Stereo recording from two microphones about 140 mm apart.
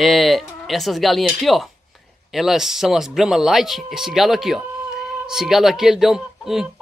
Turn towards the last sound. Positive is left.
turn(degrees=-5)  # may be behind; listen again after turning